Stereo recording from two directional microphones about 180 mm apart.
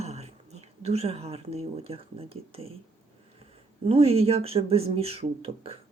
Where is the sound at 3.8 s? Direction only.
35° right (ahead or behind).